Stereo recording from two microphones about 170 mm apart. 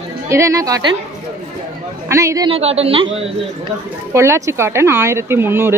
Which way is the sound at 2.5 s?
35° right (ahead or behind).